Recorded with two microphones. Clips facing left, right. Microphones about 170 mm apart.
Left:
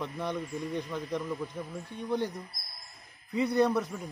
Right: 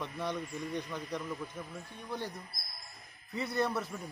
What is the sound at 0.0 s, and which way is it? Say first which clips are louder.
Speech: left 3 dB; 10° left (ahead or behind).